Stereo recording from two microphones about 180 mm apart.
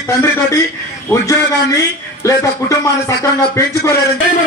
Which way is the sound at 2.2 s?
20° left (ahead or behind).